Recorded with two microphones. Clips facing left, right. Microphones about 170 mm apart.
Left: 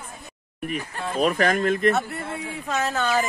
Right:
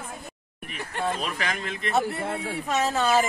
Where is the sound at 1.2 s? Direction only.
45° left (ahead or behind).